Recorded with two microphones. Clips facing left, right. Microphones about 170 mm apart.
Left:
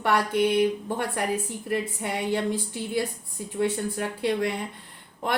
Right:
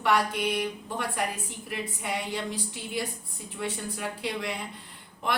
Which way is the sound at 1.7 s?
55° left (ahead or behind).